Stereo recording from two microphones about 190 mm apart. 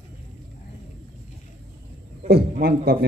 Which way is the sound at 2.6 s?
55° right (ahead or behind).